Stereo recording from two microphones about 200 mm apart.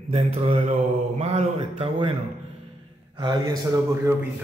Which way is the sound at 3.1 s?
20° right (ahead or behind).